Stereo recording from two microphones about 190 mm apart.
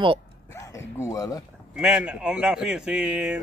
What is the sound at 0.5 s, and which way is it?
Speech, 15° left (ahead or behind).